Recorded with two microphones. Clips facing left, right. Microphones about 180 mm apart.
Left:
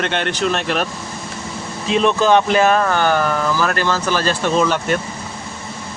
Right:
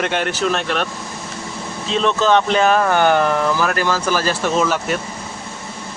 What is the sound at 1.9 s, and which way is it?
Speech, 15° left (ahead or behind).